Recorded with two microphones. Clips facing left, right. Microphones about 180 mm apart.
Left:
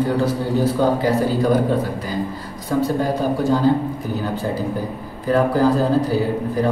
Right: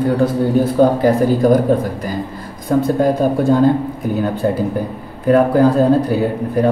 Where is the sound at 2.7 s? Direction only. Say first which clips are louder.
Right 5 dB; 50° right (ahead or behind).